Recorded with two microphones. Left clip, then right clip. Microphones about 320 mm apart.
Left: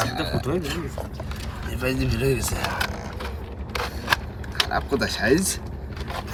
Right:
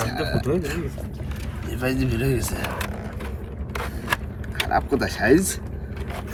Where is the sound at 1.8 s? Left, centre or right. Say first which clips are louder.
Even; centre.